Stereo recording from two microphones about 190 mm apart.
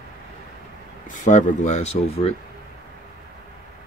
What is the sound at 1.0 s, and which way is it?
Speech, 40° left (ahead or behind).